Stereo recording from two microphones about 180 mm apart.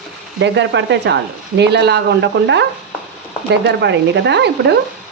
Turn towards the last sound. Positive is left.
turn(degrees=-70)  # may be behind; listen again after turning